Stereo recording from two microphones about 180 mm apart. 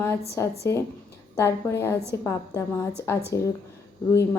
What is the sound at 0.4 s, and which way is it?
A woman's voice, 15° left (ahead or behind).